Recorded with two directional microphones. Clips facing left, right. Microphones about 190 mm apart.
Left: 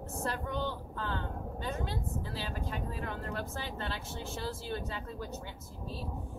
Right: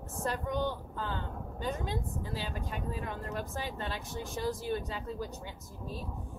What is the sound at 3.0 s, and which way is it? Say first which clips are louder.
Speech: even; 15° right (ahead or behind).